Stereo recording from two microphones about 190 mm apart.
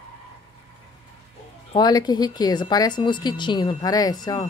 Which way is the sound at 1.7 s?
20° left (ahead or behind).